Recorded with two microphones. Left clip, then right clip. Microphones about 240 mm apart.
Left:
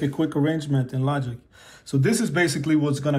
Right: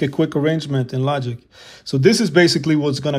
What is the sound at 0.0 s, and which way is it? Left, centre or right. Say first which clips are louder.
Speech: right 5 dB; right.